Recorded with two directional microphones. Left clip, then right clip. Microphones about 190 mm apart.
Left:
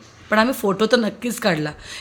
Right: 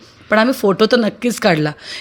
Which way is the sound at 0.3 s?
25° right (ahead or behind).